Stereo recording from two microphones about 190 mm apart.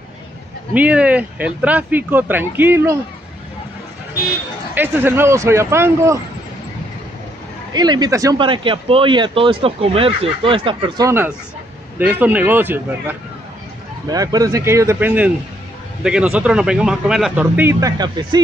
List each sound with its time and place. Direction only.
0.7 s speech: 5° right (ahead or behind)
4.7 s speech: 10° right (ahead or behind)
7.7 s speech: 20° right (ahead or behind)
11.1 s speech: 10° right (ahead or behind)